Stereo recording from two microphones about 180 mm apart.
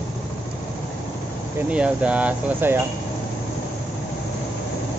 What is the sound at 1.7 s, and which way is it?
Speech, 5° right (ahead or behind).